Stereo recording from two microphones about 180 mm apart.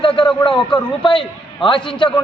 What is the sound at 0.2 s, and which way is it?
Speech, 25° left (ahead or behind).